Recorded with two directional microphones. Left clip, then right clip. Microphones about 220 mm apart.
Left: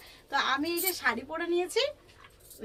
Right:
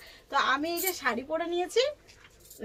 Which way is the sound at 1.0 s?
15° left (ahead or behind).